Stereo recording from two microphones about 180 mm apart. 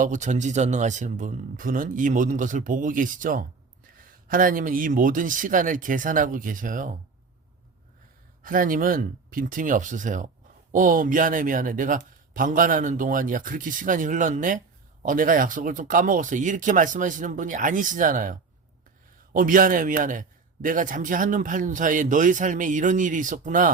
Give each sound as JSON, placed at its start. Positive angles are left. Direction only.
{"t": 0.0, "sound": "a man's voice", "side_deg": -45}
{"t": 8.4, "sound": "a man's voice", "side_deg": -50}